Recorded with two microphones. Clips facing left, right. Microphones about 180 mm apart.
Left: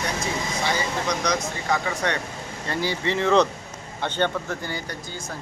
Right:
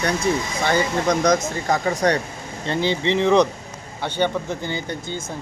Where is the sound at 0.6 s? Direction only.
55° right (ahead or behind).